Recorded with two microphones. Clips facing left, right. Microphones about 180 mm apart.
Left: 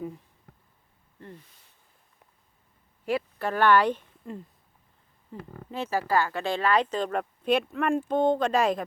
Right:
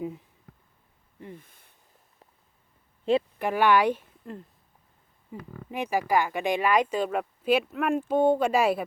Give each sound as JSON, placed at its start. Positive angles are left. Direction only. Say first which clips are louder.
{"t": 1.4, "sound": "a sound", "louder": "right 2 dB", "side_deg": -55}
{"t": 3.1, "sound": "speech", "louder": "right 4 dB", "side_deg": -20}
{"t": 5.3, "sound": "speech", "louder": "right 1 dB", "side_deg": -15}